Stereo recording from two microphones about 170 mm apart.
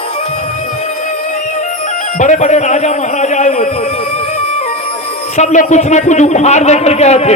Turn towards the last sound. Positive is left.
turn(degrees=40)  # may be behind; listen again after turning